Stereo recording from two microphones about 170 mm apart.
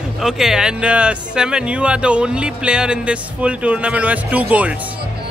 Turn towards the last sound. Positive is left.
turn(degrees=-10)  # may be behind; listen again after turning